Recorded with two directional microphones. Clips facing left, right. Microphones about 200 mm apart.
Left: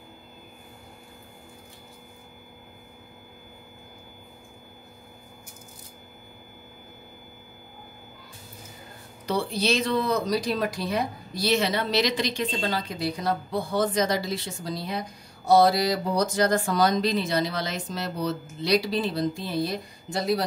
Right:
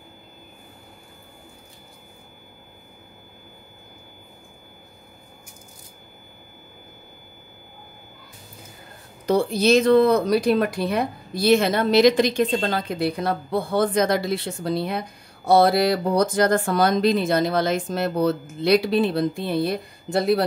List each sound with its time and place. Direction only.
9.2 s speech: 45° right (ahead or behind)